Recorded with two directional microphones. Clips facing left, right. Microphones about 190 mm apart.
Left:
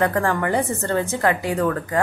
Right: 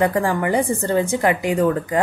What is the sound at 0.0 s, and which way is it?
Speech, 10° right (ahead or behind).